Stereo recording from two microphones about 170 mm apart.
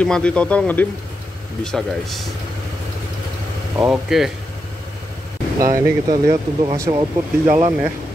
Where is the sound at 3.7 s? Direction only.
5° right (ahead or behind).